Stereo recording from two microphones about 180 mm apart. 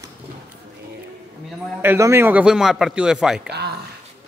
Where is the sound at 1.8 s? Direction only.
15° right (ahead or behind).